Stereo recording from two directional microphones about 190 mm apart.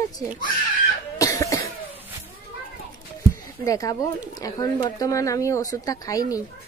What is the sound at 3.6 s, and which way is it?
A woman's voice, 20° left (ahead or behind).